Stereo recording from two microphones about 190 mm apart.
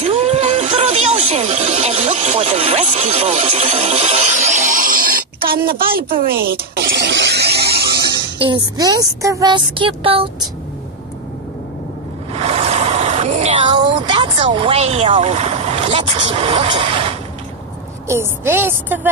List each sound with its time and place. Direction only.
0.0 s music: 35° right (ahead or behind); by 8.0 s 55° right (ahead or behind)
8.2 s speech: 25° right (ahead or behind)
12.4 s vehicle: 30° right (ahead or behind)
13.7 s speech: 25° right (ahead or behind)
18.0 s a woman's voice: 15° right (ahead or behind)